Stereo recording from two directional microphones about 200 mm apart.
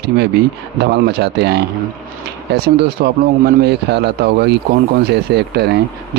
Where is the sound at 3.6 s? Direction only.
55° right (ahead or behind).